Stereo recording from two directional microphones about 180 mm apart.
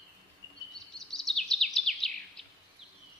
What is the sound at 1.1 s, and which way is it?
Bird vocalization, centre (ahead or behind).